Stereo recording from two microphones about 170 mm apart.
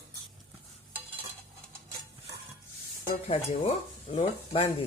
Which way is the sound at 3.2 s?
35° left (ahead or behind).